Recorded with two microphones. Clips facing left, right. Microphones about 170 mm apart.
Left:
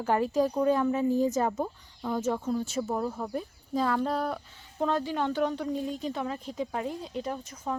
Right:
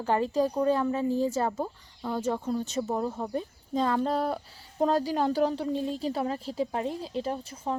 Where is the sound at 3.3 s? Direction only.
5° left (ahead or behind).